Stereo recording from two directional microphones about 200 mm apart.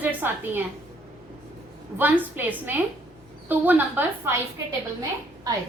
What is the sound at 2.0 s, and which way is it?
A woman's voice, 10° right (ahead or behind).